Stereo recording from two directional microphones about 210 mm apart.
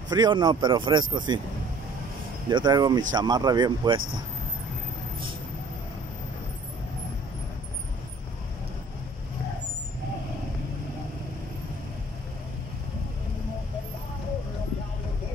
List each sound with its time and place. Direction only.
0.1 s speech: 20° right (ahead or behind)
2.5 s speech: 20° right (ahead or behind)